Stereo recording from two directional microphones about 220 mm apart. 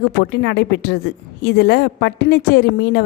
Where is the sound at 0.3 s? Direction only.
50° left (ahead or behind).